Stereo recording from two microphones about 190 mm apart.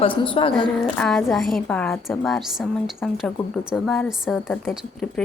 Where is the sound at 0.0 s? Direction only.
25° left (ahead or behind).